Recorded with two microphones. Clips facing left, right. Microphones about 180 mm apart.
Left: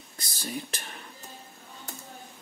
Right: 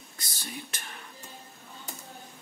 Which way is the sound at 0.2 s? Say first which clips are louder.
Left 6 dB; 35° left (ahead or behind).